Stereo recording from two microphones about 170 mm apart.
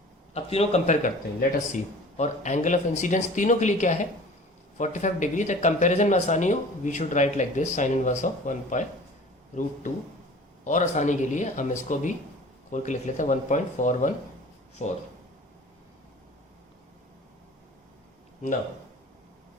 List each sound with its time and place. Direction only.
0.3 s speech: 35° left (ahead or behind)
10.6 s speech: 45° left (ahead or behind)